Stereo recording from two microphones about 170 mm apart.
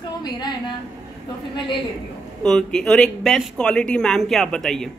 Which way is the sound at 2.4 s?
5° left (ahead or behind).